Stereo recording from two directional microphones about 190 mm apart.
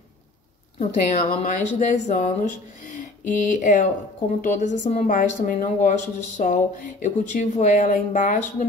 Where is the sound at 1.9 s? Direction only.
40° left (ahead or behind).